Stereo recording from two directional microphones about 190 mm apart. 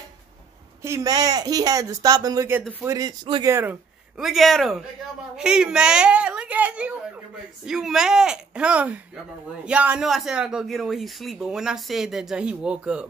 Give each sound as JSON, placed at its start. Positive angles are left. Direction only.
{"t": 0.8, "sound": "a man's voice", "side_deg": -15}
{"t": 4.2, "sound": "speech", "side_deg": 0}